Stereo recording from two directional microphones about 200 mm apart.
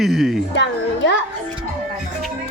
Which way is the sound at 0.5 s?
60° left (ahead or behind).